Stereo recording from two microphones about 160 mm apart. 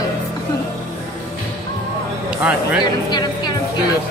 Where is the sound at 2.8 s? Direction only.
25° left (ahead or behind).